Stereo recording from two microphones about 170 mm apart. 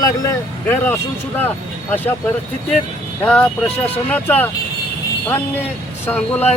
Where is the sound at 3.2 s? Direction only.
5° left (ahead or behind).